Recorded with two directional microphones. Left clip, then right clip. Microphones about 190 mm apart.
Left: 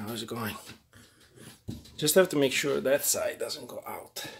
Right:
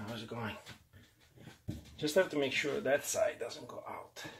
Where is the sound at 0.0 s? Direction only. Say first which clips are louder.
Left 6 dB; 55° left (ahead or behind).